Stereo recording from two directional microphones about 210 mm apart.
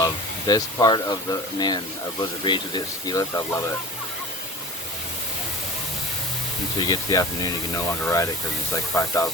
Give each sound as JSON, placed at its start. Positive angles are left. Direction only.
{"t": 0.0, "sound": "speech", "side_deg": 20}
{"t": 6.7, "sound": "speech", "side_deg": 20}